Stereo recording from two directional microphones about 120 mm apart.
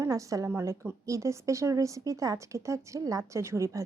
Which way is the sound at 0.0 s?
25° right (ahead or behind).